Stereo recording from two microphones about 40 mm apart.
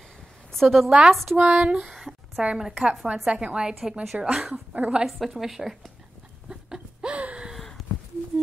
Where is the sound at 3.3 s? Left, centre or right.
Right.